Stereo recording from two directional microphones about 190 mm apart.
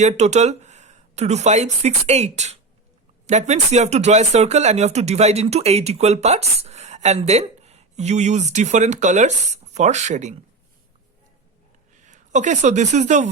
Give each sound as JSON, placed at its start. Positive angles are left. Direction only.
{"t": 0.0, "sound": "speech", "side_deg": -35}
{"t": 12.0, "sound": "a woman's voice", "side_deg": -40}